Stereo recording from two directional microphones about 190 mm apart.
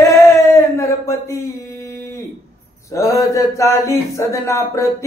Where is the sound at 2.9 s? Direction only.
15° left (ahead or behind).